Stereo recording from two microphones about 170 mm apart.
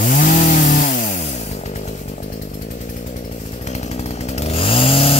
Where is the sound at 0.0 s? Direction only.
45° left (ahead or behind).